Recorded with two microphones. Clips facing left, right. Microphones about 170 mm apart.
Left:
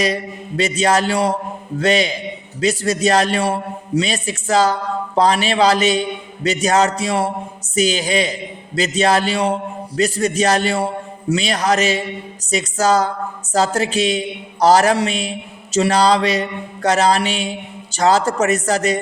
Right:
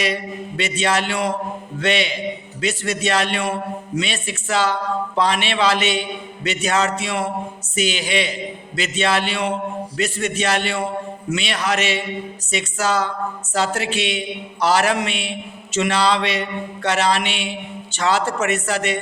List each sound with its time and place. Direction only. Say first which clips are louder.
0.0 s a man's voice: left 3 dB; 40° left (ahead or behind)